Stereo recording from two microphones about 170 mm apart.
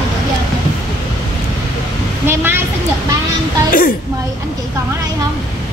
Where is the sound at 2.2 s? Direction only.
10° right (ahead or behind).